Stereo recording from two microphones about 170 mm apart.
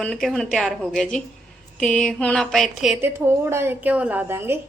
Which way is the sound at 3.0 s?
15° right (ahead or behind).